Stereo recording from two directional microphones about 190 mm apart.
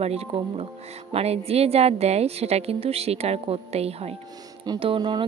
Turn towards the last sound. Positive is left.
turn(degrees=-25)  # may be behind; listen again after turning